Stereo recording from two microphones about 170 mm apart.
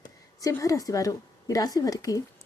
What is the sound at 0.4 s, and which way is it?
Speech, 20° left (ahead or behind).